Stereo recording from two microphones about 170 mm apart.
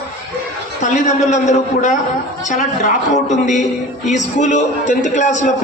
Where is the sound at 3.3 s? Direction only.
45° left (ahead or behind).